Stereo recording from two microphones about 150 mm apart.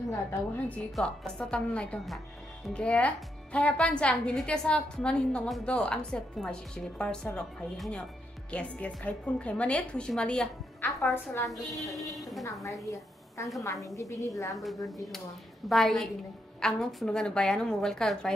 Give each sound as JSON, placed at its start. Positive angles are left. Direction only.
{"t": 0.3, "sound": "a woman's voice", "side_deg": 10}
{"t": 11.3, "sound": "a woman's voice", "side_deg": 20}
{"t": 11.7, "sound": "a woman's voice", "side_deg": 0}
{"t": 12.8, "sound": "a woman's voice", "side_deg": 20}
{"t": 15.7, "sound": "a woman's voice", "side_deg": 0}